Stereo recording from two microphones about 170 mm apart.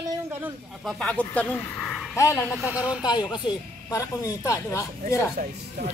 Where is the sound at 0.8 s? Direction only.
5° left (ahead or behind).